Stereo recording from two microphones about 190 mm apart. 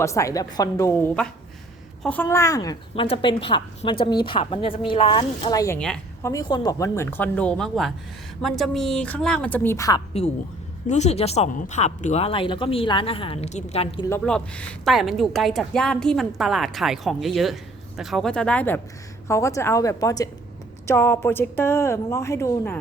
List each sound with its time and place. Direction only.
0.0 s a woman's voice: 15° left (ahead or behind)
10.8 s a woman's voice: 35° left (ahead or behind)
14.1 s a woman's voice: 5° left (ahead or behind)